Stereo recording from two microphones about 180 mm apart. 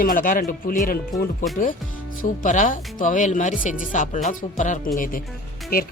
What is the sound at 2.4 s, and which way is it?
Speech, 45° left (ahead or behind).